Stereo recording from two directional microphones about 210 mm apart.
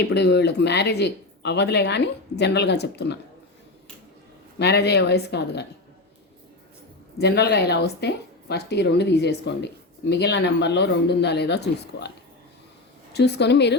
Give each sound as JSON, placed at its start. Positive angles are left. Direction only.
{"t": 0.0, "sound": "speech", "side_deg": 55}
{"t": 4.6, "sound": "speech", "side_deg": 50}
{"t": 7.2, "sound": "speech", "side_deg": 50}
{"t": 13.1, "sound": "speech", "side_deg": 50}